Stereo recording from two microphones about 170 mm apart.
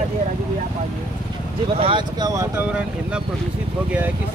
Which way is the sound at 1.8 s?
30° right (ahead or behind).